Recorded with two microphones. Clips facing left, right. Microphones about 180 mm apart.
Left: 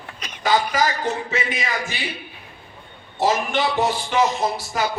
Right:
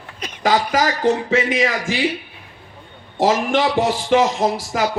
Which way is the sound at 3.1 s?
90° right.